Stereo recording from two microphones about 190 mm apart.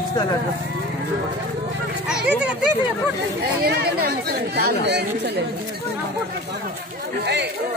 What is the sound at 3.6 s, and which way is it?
Speech, 55° right (ahead or behind).